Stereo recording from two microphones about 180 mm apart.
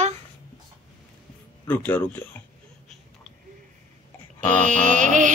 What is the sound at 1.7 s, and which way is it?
Speech, 10° left (ahead or behind).